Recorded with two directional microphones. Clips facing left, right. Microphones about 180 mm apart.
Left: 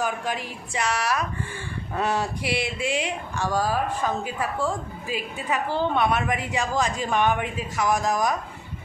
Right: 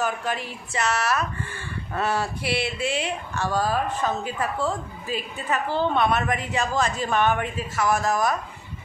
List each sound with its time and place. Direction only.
0.0 s speech: 15° left (ahead or behind)